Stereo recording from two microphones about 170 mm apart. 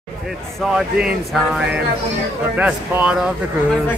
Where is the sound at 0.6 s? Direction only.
5° right (ahead or behind).